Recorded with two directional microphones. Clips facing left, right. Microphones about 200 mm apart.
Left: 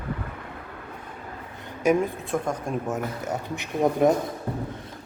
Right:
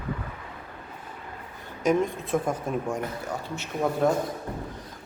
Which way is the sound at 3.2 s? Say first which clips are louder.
Left 3 dB; 20° left (ahead or behind).